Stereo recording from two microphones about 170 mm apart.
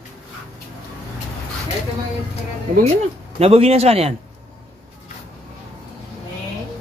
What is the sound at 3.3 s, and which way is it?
Speech, 35° right (ahead or behind).